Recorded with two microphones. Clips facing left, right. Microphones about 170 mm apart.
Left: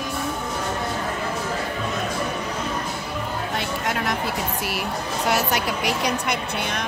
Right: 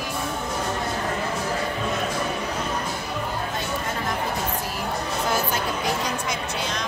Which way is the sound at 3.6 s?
75° left (ahead or behind).